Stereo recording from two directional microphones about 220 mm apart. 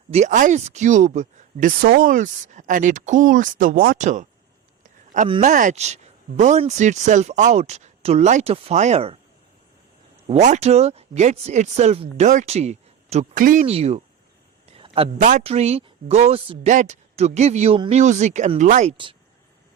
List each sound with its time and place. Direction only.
0.1 s speech: 35° right (ahead or behind)
4.8 s a sound: 35° right (ahead or behind)
5.4 s speech: 35° right (ahead or behind)
10.2 s speech: 30° right (ahead or behind)